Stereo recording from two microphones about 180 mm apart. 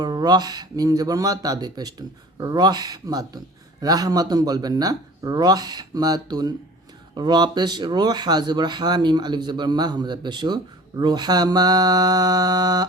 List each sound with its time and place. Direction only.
0.0 s speech: 20° right (ahead or behind)